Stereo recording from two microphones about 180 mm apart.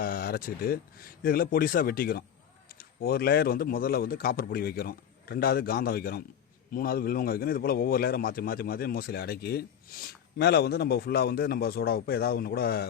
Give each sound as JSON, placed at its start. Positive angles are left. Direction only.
{"t": 0.0, "sound": "a man's voice", "side_deg": 55}